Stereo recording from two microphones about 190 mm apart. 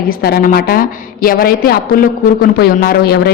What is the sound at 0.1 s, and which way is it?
A woman's voice, 55° left (ahead or behind).